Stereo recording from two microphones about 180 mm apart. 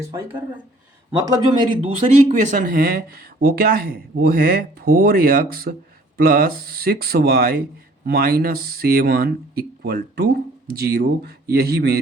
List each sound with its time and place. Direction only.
0.0 s speech: 15° right (ahead or behind)
1.8 s speech: 35° right (ahead or behind); by 11.9 s 60° right (ahead or behind)